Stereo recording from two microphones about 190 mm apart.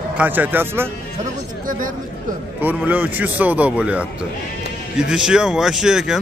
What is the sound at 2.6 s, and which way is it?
Speech, 10° right (ahead or behind).